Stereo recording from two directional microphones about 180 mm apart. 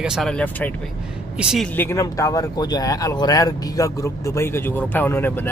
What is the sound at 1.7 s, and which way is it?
Speech, 15° left (ahead or behind).